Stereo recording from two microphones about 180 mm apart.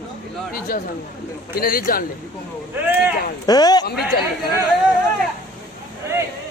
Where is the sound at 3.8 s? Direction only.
60° left (ahead or behind).